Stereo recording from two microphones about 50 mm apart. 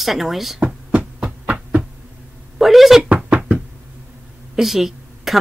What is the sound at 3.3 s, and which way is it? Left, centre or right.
Knock, right.